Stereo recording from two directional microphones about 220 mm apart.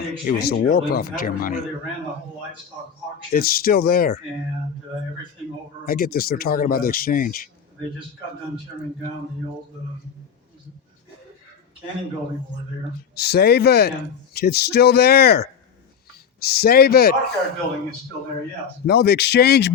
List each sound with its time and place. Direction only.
0.3 s speech: 45° left (ahead or behind)
3.3 s speech: 45° left (ahead or behind)
5.8 s speech: 40° left (ahead or behind)
13.1 s speech: 45° left (ahead or behind)
18.9 s speech: 45° left (ahead or behind)